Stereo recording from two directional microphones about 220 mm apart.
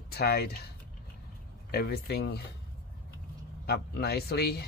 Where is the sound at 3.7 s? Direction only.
45° left (ahead or behind).